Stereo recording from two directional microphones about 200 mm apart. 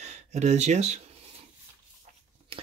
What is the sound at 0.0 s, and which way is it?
Speech, 35° right (ahead or behind).